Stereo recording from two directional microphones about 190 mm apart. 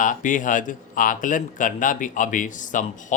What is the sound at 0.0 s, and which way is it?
Speech, 45° left (ahead or behind).